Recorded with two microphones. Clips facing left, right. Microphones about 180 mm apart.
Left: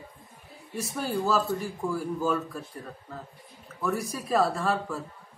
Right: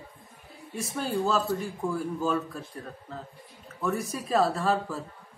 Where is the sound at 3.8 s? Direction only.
Centre (ahead or behind).